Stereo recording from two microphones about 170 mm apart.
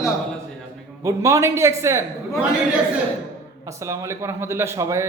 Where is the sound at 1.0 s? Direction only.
15° right (ahead or behind).